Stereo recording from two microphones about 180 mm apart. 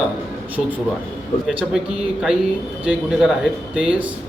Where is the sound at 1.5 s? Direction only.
5° right (ahead or behind).